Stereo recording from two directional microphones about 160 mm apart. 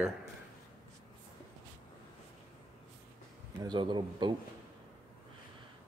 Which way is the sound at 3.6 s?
30° right (ahead or behind).